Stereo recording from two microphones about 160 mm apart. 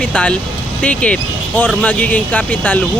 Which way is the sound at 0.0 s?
5° left (ahead or behind).